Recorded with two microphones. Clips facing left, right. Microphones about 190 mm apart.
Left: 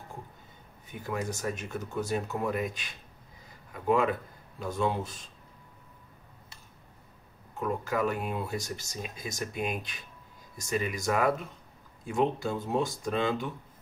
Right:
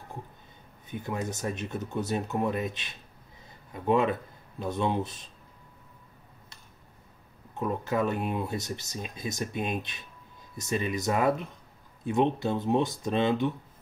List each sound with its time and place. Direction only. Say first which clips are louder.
0.8 s speech: right 1 dB; 20° right (ahead or behind)
7.5 s speech: right 2 dB; 20° right (ahead or behind)